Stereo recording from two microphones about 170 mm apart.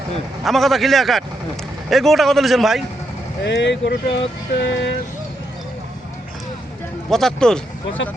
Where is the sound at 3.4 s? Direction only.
90° left.